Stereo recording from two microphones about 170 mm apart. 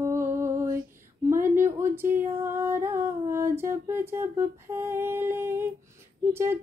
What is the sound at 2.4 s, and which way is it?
Music, 15° right (ahead or behind).